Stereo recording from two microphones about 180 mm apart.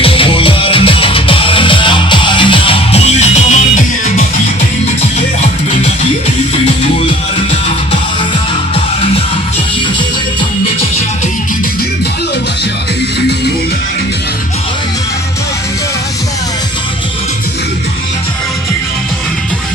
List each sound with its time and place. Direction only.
0.0 s music: 30° left (ahead or behind)
5.4 s music: 40° left (ahead or behind)